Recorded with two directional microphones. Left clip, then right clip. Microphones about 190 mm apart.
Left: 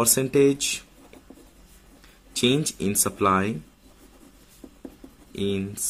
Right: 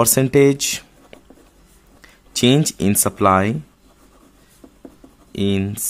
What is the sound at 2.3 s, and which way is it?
Speech, 40° right (ahead or behind).